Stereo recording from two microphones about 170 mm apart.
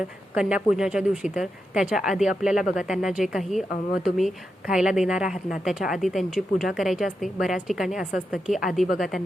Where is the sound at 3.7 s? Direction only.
60° left (ahead or behind).